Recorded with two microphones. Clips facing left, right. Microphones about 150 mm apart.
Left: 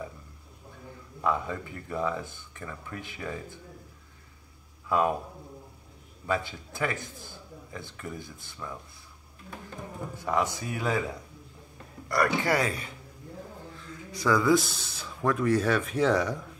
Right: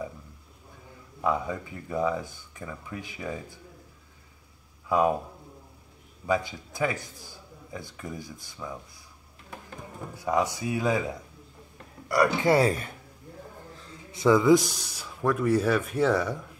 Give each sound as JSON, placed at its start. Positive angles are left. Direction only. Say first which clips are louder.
{"t": 1.2, "sound": "a man's voice", "louder": "right 1 dB", "side_deg": -15}
{"t": 4.8, "sound": "speech", "louder": "right 2 dB", "side_deg": -15}
{"t": 6.2, "sound": "a man's voice", "louder": "right 3 dB", "side_deg": -15}
{"t": 10.1, "sound": "a man's voice", "louder": "right 2 dB", "side_deg": -15}
{"t": 12.1, "sound": "a man's voice", "louder": "right 3 dB", "side_deg": -10}
{"t": 12.4, "sound": "speech", "louder": "right 5 dB", "side_deg": -30}
{"t": 13.7, "sound": "speech", "louder": "left 4 dB", "side_deg": -30}